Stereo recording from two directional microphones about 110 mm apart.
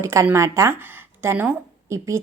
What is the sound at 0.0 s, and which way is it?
A woman's voice, 25° right (ahead or behind).